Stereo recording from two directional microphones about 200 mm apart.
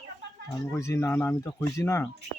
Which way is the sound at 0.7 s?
15° left (ahead or behind).